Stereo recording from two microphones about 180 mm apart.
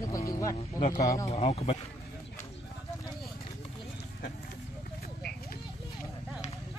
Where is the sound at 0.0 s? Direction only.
20° left (ahead or behind).